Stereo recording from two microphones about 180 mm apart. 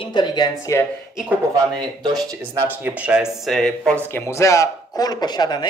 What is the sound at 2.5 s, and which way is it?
Speech, 10° right (ahead or behind).